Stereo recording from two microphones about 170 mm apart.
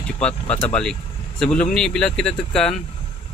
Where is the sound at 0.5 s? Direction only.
5° left (ahead or behind).